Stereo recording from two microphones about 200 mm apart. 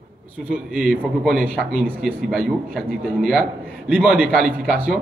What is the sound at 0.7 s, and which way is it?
A man's voice, 5° right (ahead or behind).